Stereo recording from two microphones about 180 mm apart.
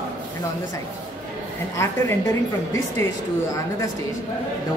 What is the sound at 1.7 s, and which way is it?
Speech, 15° left (ahead or behind).